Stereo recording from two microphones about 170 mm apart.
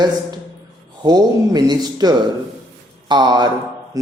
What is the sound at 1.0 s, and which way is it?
Speech, 25° right (ahead or behind).